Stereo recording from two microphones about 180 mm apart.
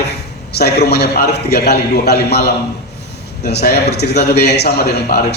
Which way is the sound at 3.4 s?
60° left (ahead or behind).